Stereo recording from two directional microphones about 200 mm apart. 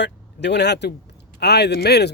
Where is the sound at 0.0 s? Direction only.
60° left (ahead or behind).